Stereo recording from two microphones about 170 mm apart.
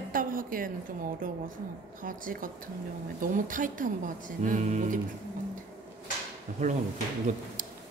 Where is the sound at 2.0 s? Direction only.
55° right (ahead or behind).